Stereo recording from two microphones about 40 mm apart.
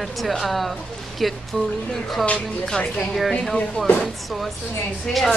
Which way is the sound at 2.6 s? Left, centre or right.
Centre.